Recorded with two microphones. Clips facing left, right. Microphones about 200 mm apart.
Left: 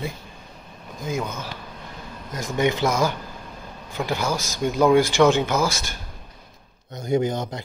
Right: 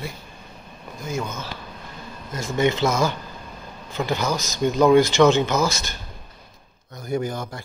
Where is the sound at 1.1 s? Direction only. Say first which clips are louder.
Right 1 dB; 15° left (ahead or behind).